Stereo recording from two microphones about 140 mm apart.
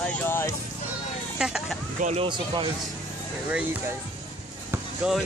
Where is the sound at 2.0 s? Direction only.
55° right (ahead or behind).